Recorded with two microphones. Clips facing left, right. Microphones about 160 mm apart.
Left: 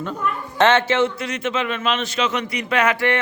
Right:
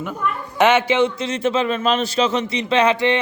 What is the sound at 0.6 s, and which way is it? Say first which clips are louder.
A man's voice: right 1 dB; 10° right (ahead or behind).